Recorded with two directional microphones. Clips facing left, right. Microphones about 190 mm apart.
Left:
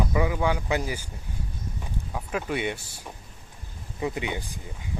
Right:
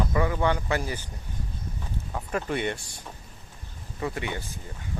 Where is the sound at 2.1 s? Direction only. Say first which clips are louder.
Even; 5° left (ahead or behind).